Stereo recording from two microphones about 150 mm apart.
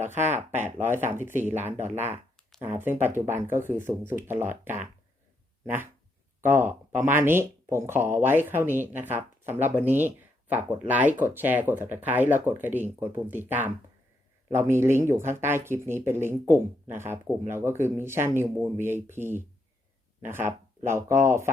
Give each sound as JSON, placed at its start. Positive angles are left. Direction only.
{"t": 0.0, "sound": "speech", "side_deg": -15}